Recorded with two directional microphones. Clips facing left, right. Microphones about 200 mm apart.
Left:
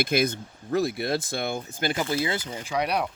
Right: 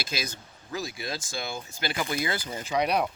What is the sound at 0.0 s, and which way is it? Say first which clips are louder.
Speech: left 11 dB; 55° left (ahead or behind).